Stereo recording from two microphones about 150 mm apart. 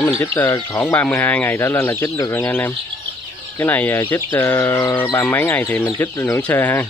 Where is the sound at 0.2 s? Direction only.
15° left (ahead or behind).